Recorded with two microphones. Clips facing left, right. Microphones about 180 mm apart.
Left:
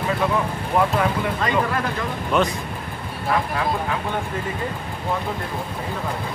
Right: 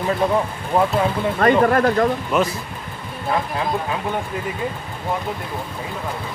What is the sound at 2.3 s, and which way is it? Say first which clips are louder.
Speech: left 1 dB; 5° right (ahead or behind).